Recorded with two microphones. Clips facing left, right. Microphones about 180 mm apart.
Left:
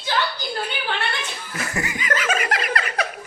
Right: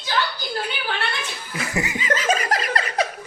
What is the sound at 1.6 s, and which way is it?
Laughter, 20° right (ahead or behind).